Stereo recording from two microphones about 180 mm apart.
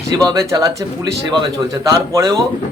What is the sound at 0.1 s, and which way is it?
A man's voice, 20° right (ahead or behind).